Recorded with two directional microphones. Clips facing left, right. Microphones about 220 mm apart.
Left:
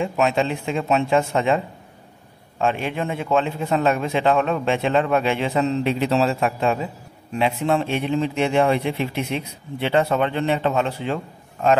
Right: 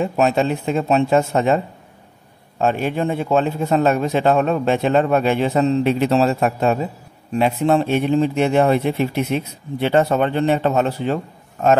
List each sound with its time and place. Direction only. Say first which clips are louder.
0.0 s a man's voice: right 3 dB; 40° right (ahead or behind)
2.6 s a man's voice: right 4 dB; 40° right (ahead or behind)